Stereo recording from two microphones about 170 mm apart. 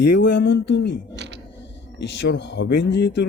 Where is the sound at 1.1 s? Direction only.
90° right.